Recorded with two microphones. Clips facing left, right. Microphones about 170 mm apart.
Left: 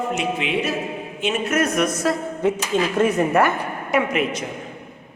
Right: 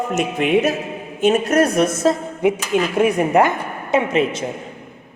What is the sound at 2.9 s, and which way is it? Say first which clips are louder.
A woman's voice: right 3 dB; 10° right (ahead or behind).